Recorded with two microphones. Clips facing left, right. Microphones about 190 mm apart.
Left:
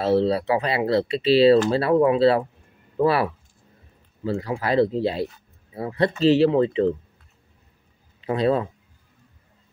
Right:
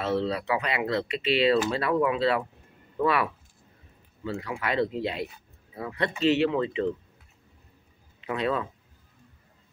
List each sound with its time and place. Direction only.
0.0 s speech: 35° left (ahead or behind)
8.2 s speech: 35° left (ahead or behind)